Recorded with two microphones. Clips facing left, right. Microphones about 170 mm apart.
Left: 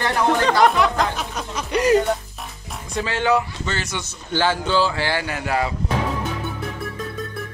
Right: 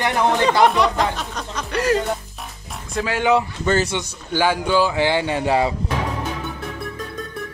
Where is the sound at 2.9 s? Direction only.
5° right (ahead or behind).